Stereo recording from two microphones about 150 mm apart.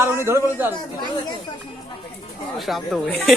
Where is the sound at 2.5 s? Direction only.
Centre (ahead or behind).